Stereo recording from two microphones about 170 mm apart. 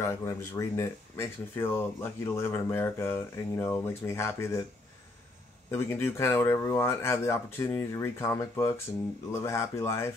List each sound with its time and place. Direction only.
0.0 s speech: 15° left (ahead or behind)
5.7 s speech: 15° left (ahead or behind)